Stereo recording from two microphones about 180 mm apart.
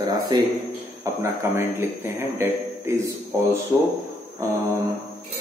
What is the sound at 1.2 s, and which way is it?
A man's voice, 15° right (ahead or behind).